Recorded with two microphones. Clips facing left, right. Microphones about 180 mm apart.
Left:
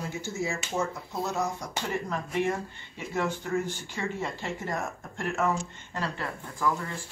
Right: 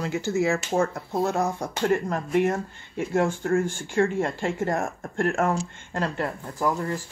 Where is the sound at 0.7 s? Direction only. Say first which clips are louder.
Right 7 dB; 55° right (ahead or behind).